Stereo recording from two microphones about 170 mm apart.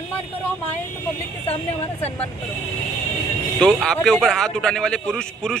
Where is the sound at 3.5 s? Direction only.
5° left (ahead or behind).